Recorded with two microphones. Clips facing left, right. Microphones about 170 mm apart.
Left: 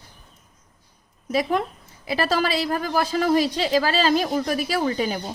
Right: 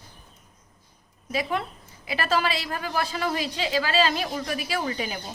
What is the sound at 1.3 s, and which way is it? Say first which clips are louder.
A woman's voice: left 5 dB; 40° left (ahead or behind).